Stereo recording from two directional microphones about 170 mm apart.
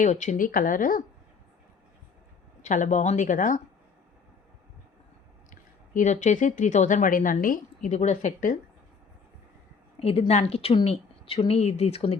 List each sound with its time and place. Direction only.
0.0 s a woman's voice: 45° left (ahead or behind)
2.6 s a woman's voice: 45° left (ahead or behind)
5.5 s speech: 50° left (ahead or behind)
10.0 s a woman's voice: 35° left (ahead or behind)